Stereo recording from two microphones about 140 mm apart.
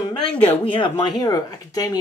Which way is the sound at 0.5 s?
35° left (ahead or behind).